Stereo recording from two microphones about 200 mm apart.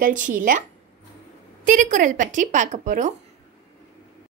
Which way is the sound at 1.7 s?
40° right (ahead or behind).